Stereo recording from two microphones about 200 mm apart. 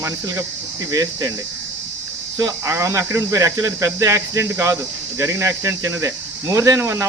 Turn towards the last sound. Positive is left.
turn(degrees=-15)  # may be behind; listen again after turning